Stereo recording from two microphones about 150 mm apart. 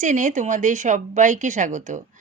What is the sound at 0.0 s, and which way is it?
Speech, 55° right (ahead or behind).